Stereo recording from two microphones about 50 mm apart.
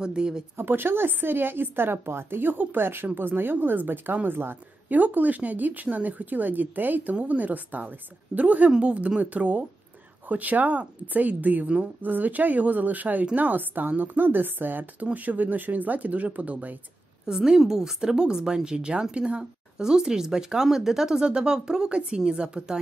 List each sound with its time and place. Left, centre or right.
0.0 s a woman's voice: centre
0.6 s a woman's voice: right
4.8 s a woman's voice: right
17.3 s a woman's voice: centre